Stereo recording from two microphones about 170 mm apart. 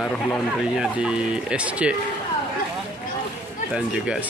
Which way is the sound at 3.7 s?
Centre (ahead or behind).